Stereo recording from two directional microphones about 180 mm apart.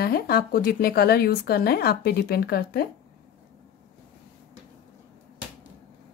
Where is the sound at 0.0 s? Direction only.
60° left (ahead or behind).